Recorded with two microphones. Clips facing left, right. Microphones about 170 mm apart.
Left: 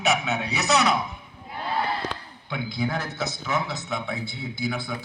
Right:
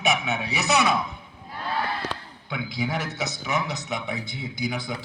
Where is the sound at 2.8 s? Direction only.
20° right (ahead or behind).